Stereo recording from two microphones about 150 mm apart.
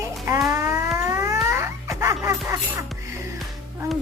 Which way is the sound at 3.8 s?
20° right (ahead or behind).